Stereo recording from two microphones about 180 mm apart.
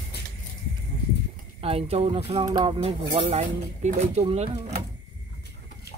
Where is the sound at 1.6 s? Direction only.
35° right (ahead or behind).